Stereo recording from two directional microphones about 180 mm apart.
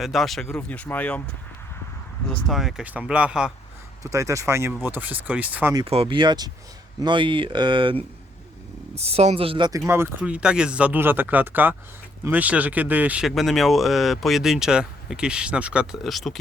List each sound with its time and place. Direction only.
0.0 s speech: centre (ahead or behind)
2.3 s speech: centre (ahead or behind)
4.0 s speech: 15° right (ahead or behind)
5.7 s speech: 30° right (ahead or behind)
9.0 s speech: 35° right (ahead or behind); by 16.4 s centre (ahead or behind)